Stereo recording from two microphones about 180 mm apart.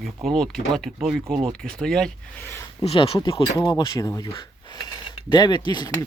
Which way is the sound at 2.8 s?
30° left (ahead or behind).